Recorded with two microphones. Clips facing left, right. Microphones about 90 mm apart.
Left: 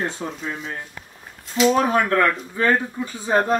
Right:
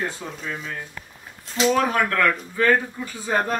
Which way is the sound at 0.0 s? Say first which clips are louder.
Left 3 dB; 25° left (ahead or behind).